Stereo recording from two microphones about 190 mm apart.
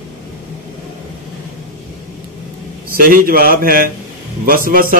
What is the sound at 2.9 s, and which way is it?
A man's voice, 50° right (ahead or behind).